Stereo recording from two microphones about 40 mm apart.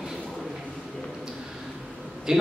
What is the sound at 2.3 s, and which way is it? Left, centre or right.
Speech, centre.